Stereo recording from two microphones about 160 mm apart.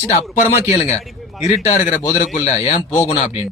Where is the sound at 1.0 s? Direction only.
Centre (ahead or behind).